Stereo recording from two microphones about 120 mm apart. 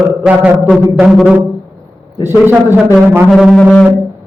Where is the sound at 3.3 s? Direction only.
Centre (ahead or behind).